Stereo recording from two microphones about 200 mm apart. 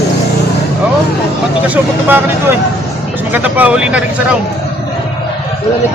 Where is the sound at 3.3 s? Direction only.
10° right (ahead or behind).